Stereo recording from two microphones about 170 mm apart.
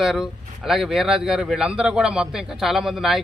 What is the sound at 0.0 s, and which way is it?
A man's voice, centre (ahead or behind).